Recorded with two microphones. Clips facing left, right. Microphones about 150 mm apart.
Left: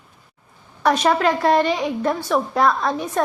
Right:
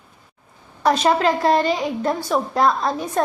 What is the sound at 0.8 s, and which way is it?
A woman's voice, 30° right (ahead or behind).